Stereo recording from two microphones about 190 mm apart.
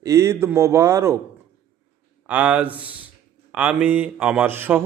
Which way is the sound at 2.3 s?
10° right (ahead or behind).